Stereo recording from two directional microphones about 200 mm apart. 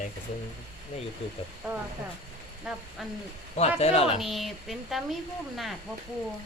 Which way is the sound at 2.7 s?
Centre (ahead or behind).